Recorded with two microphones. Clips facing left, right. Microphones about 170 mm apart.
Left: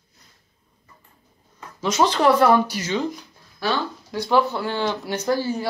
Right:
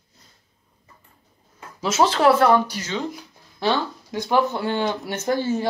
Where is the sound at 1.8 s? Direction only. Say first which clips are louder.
Right 1 dB; 5° right (ahead or behind).